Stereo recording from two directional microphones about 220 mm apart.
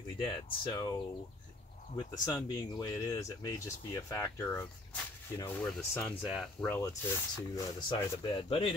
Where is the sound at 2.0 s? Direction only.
15° left (ahead or behind).